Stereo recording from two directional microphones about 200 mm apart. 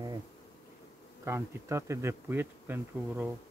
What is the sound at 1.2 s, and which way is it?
Bee, 15° right (ahead or behind).